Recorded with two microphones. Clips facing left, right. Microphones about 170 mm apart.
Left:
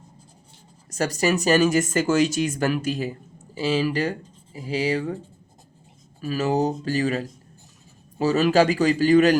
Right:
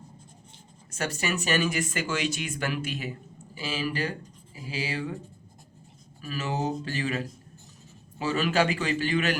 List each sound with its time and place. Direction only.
0.9 s speech: 35° left (ahead or behind)
6.2 s speech: 40° left (ahead or behind)